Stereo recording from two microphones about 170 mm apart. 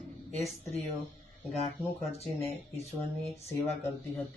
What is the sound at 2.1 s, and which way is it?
Speech, 40° left (ahead or behind).